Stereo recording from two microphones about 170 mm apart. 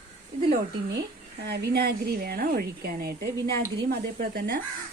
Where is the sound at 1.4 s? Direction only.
70° right (ahead or behind).